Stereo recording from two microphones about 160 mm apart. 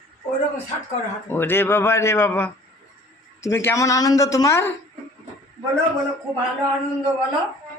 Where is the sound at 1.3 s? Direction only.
15° left (ahead or behind).